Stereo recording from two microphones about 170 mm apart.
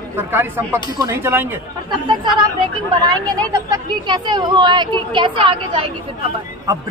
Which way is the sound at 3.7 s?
25° right (ahead or behind).